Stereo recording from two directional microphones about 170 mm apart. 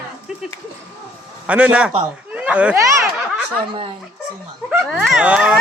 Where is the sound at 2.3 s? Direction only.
5° right (ahead or behind).